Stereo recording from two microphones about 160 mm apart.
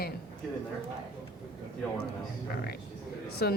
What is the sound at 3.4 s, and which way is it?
Speech, 80° left.